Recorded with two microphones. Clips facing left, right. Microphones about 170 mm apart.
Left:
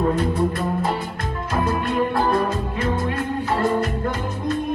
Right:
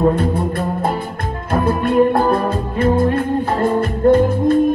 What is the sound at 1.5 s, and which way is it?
Music, 55° right (ahead or behind).